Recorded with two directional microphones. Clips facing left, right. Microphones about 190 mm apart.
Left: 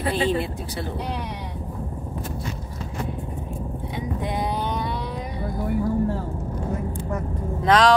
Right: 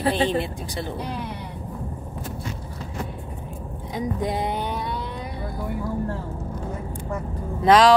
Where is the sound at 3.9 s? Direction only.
35° right (ahead or behind).